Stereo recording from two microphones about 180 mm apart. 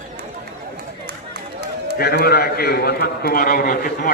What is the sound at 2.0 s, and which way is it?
A man's voice, 60° left (ahead or behind).